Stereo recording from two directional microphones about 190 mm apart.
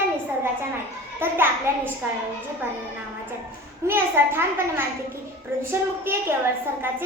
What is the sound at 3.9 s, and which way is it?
A child's voice, 10° right (ahead or behind).